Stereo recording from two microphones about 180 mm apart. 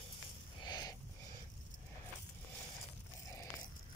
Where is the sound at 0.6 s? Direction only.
20° left (ahead or behind).